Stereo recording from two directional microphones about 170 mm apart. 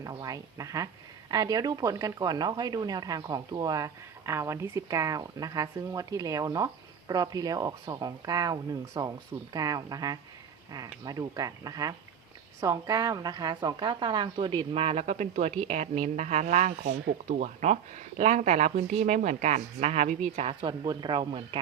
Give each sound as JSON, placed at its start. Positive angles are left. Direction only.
{"t": 0.0, "sound": "speech", "side_deg": -20}
{"t": 20.6, "sound": "speech", "side_deg": -25}